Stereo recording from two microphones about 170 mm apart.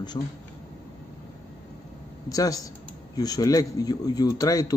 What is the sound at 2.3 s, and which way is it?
A man's voice, 20° left (ahead or behind).